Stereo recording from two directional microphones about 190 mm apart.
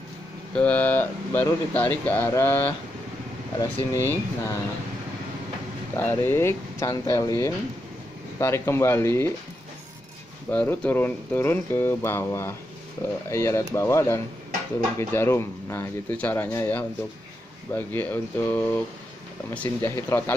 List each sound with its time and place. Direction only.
0.6 s speech: 5° left (ahead or behind)
3.7 s speech: 10° left (ahead or behind)
5.9 s speech: 10° left (ahead or behind)
10.5 s speech: 10° left (ahead or behind)